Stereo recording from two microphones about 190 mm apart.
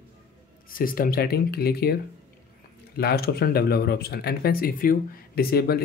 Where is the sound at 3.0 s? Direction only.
55° left (ahead or behind).